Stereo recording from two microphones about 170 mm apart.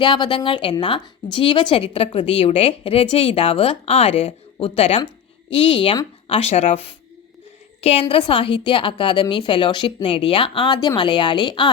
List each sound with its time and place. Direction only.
0.0 s speech: 25° left (ahead or behind)
7.8 s speech: 40° left (ahead or behind)